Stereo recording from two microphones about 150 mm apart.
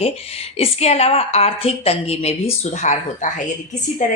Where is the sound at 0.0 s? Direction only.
40° left (ahead or behind).